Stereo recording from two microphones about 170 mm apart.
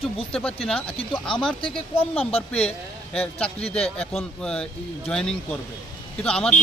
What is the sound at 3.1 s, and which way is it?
A man's voice, 5° left (ahead or behind).